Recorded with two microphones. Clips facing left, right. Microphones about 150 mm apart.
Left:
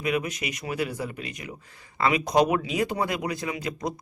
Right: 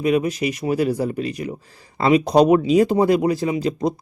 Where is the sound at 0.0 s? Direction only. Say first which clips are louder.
Right 9 dB; 30° right (ahead or behind).